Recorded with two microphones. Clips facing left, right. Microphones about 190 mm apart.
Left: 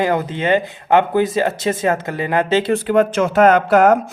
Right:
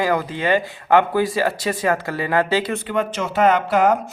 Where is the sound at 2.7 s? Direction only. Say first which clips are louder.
Left 8 dB; 45° left (ahead or behind).